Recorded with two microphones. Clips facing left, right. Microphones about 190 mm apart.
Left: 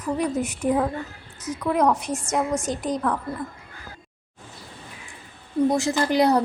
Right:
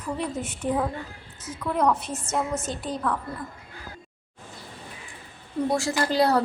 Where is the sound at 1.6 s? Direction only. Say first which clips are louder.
Left 3 dB; 15° left (ahead or behind).